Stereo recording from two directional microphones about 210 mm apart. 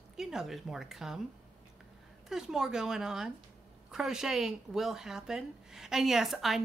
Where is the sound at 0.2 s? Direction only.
Centre (ahead or behind).